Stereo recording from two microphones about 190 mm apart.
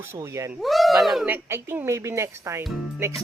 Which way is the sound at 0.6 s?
Centre (ahead or behind).